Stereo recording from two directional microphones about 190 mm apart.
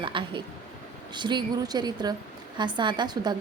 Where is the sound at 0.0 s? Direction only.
25° right (ahead or behind).